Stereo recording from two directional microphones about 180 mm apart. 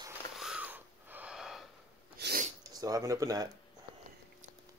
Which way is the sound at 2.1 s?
65° right (ahead or behind).